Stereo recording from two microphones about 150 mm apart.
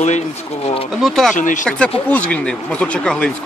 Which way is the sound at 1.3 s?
60° left (ahead or behind).